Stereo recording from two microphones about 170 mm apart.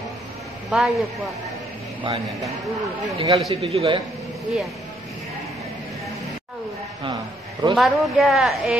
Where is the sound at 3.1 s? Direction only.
35° right (ahead or behind).